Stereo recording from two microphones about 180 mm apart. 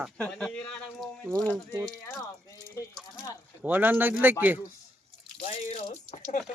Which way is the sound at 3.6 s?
10° right (ahead or behind).